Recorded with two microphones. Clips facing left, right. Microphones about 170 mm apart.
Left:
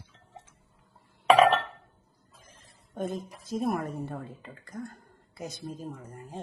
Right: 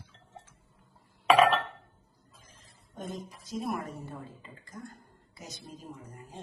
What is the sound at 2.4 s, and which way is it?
A woman's voice, 60° left (ahead or behind).